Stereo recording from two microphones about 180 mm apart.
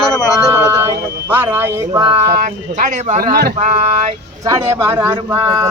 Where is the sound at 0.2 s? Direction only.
Centre (ahead or behind).